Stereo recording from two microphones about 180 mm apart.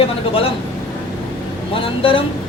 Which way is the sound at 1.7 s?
30° left (ahead or behind).